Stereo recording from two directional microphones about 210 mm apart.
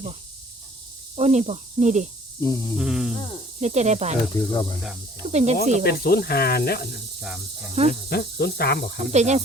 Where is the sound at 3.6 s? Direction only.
30° right (ahead or behind).